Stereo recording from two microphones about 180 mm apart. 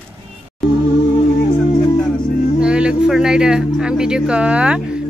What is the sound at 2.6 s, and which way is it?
Speech, 5° right (ahead or behind).